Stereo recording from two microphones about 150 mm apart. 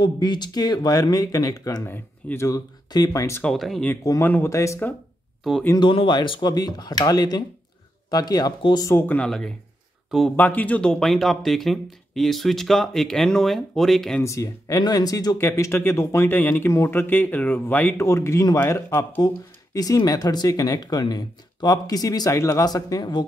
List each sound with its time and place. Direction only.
0.0 s speech: 30° left (ahead or behind)
3.4 s speech: centre (ahead or behind)
3.8 s speech: 20° left (ahead or behind)
5.4 s speech: centre (ahead or behind)
5.8 s speech: 30° left (ahead or behind); by 14.2 s centre (ahead or behind)
14.2 s speech: 20° left (ahead or behind)